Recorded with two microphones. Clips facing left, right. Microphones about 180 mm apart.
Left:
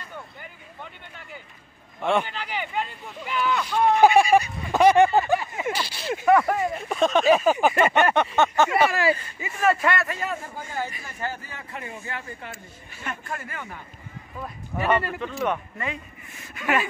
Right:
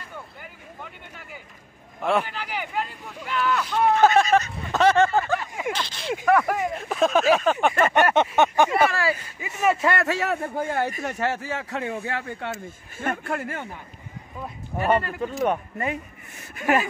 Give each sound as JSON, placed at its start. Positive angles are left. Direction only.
{"t": 2.0, "sound": "speech", "side_deg": 0}
{"t": 3.9, "sound": "a sound", "side_deg": 15}
{"t": 6.2, "sound": "speech", "side_deg": 0}
{"t": 8.3, "sound": "vehicle", "side_deg": -15}
{"t": 8.7, "sound": "speech", "side_deg": 15}
{"t": 9.1, "sound": "speech", "side_deg": -5}
{"t": 10.0, "sound": "a man's voice", "side_deg": -75}
{"t": 11.1, "sound": "speech", "side_deg": -80}
{"t": 12.6, "sound": "speech", "side_deg": -50}
{"t": 14.7, "sound": "speech", "side_deg": -25}
{"t": 15.4, "sound": "speech", "side_deg": -40}